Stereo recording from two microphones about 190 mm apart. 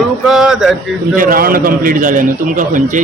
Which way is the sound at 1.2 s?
50° right (ahead or behind).